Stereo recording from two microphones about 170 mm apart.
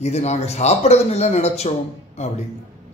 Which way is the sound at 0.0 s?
40° left (ahead or behind).